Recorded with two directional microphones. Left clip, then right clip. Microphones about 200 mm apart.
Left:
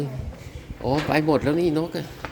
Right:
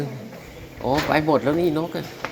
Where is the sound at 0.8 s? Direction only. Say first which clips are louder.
Right 2 dB; 30° left (ahead or behind).